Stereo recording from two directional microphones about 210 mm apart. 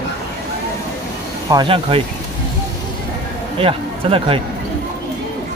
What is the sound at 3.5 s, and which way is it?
Speech, 25° right (ahead or behind).